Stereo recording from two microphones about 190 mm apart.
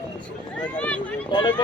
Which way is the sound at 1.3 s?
25° left (ahead or behind).